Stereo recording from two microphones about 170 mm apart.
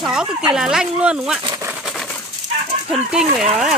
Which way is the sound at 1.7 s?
Centre (ahead or behind).